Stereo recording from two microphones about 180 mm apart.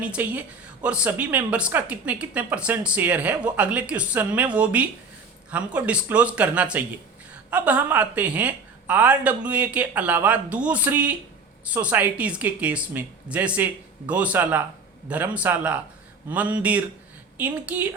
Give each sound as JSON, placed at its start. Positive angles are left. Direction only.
{"t": 0.0, "sound": "speech", "side_deg": -5}